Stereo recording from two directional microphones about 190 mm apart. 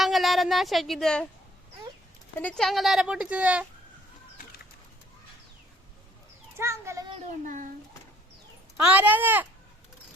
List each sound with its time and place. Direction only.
0.0 s a woman's voice: centre (ahead or behind)
2.4 s speech: 5° left (ahead or behind)
6.6 s speech: 15° right (ahead or behind)
7.4 s speech: 45° right (ahead or behind)
8.8 s speech: 10° right (ahead or behind)